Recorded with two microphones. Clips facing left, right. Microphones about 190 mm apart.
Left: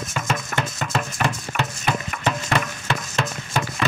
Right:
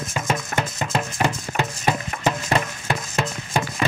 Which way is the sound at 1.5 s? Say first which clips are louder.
Right 2 dB; 10° right (ahead or behind).